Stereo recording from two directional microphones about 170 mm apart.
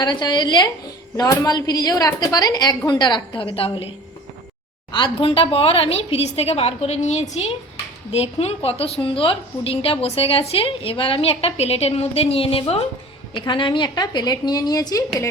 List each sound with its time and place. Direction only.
0.0 s a woman's voice: 25° left (ahead or behind)